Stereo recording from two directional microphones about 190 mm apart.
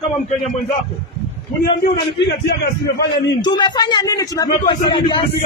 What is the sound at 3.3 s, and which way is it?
A man's voice, 25° left (ahead or behind).